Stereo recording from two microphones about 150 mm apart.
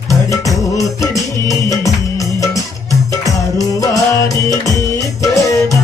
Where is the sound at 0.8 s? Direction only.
20° left (ahead or behind).